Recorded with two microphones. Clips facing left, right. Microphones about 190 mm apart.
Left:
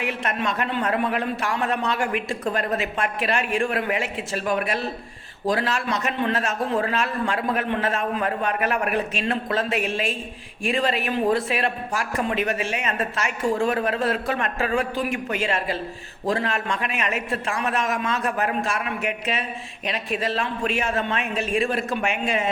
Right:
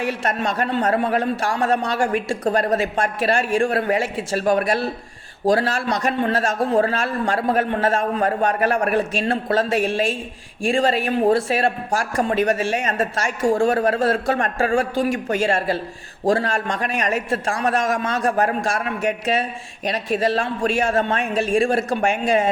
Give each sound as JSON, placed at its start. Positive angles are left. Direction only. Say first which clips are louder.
{"t": 0.0, "sound": "a man's voice", "louder": "right 3 dB", "side_deg": -40}
{"t": 13.6, "sound": "a man's voice", "louder": "right 5 dB", "side_deg": -35}
{"t": 13.9, "sound": "speech", "louder": "right 4 dB", "side_deg": -45}
{"t": 14.8, "sound": "a man's voice", "louder": "right 4 dB", "side_deg": -35}